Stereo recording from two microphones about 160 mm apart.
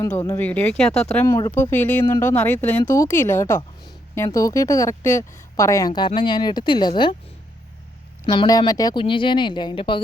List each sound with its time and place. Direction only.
0.1 s speech: 15° left (ahead or behind)
1.3 s speech: 20° left (ahead or behind)
8.3 s speech: 25° left (ahead or behind)